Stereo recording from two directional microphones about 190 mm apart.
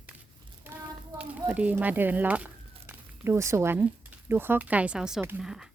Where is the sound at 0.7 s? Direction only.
10° right (ahead or behind).